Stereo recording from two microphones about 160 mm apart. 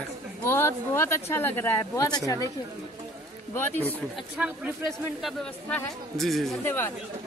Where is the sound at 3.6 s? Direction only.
15° left (ahead or behind).